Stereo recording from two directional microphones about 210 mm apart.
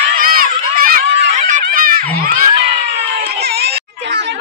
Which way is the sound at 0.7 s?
40° right (ahead or behind).